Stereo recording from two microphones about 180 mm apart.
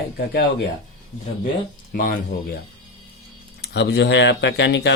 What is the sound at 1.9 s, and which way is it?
Speech, 50° left (ahead or behind).